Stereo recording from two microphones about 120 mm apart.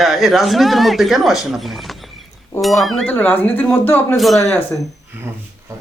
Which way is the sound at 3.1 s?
15° left (ahead or behind).